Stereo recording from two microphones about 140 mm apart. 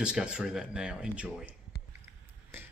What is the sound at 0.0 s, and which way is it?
Speech, 5° right (ahead or behind).